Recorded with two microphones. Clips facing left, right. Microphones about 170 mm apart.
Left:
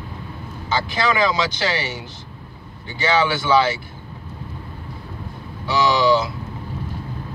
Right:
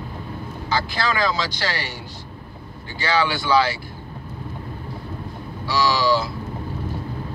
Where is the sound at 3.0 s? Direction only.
20° left (ahead or behind).